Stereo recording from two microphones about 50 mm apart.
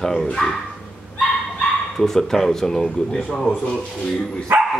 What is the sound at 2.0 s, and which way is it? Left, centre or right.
Speech, centre.